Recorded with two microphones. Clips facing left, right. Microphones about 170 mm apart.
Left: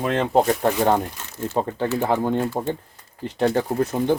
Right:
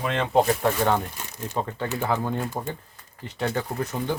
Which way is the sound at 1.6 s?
30° left (ahead or behind).